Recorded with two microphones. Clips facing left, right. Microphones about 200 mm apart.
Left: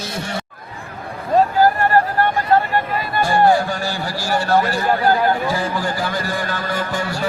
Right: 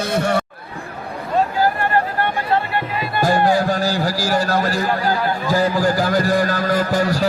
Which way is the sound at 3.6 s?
40° right (ahead or behind).